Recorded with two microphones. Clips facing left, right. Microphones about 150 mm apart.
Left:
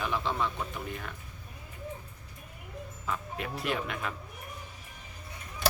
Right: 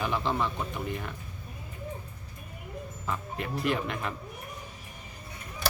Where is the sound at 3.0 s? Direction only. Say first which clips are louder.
Right 1 dB; centre (ahead or behind).